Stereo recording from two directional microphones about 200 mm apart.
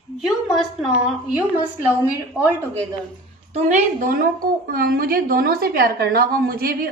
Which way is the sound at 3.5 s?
35° right (ahead or behind).